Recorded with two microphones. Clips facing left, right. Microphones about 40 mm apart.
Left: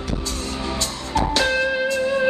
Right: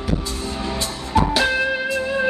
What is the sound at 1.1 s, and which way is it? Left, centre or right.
Music, centre.